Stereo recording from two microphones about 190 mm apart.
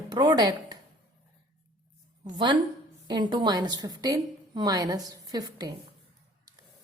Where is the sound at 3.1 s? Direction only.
20° right (ahead or behind).